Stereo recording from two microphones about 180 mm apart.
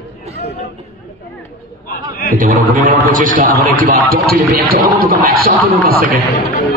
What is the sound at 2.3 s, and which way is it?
A man's voice, 50° right (ahead or behind).